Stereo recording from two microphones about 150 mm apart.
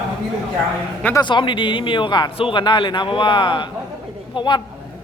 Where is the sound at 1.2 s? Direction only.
30° left (ahead or behind).